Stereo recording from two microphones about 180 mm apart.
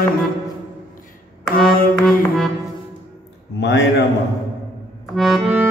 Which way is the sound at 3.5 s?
75° left (ahead or behind).